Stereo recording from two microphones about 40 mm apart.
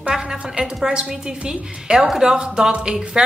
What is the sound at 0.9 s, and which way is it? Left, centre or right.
A woman's voice, right.